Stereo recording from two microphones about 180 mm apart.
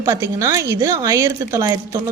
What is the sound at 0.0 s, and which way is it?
A woman's voice, 15° right (ahead or behind).